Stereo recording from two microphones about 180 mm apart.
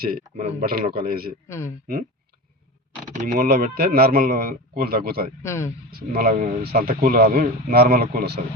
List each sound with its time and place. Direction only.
0.0 s speech: 55° right (ahead or behind)
1.5 s speech: 15° left (ahead or behind)
3.1 s speech: 50° right (ahead or behind)
5.4 s speech: 15° left (ahead or behind)
5.9 s speech: 55° right (ahead or behind)